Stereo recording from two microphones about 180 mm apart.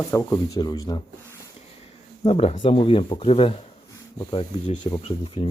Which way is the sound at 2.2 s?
35° left (ahead or behind).